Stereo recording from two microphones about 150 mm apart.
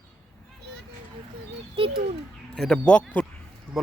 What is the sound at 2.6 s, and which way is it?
Speech, 5° left (ahead or behind).